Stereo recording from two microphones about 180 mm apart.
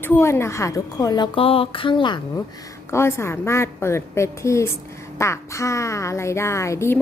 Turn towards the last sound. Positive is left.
turn(degrees=15)  # may be behind; listen again after turning